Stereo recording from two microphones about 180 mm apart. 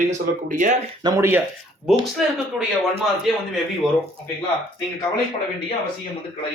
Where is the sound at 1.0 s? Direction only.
25° right (ahead or behind).